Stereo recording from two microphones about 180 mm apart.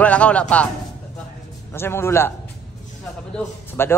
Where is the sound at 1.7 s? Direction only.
15° left (ahead or behind).